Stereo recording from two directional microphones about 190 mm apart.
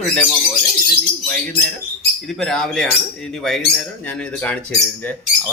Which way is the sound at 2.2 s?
Centre (ahead or behind).